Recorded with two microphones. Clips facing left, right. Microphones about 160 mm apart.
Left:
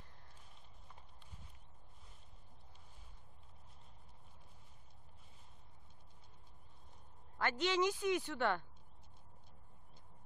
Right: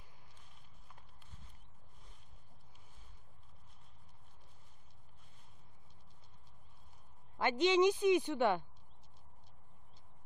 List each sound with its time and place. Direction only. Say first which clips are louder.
7.3 s a woman's voice: right 6 dB; 20° right (ahead or behind)